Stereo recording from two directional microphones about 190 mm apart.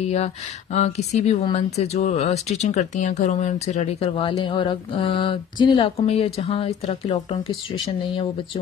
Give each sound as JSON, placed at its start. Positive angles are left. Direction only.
{"t": 0.0, "sound": "speech", "side_deg": 35}